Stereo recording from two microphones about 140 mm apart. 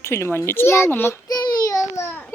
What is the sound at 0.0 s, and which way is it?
A child's voice, 20° left (ahead or behind).